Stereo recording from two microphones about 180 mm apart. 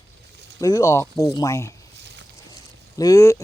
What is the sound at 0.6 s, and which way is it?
Speech, 20° left (ahead or behind).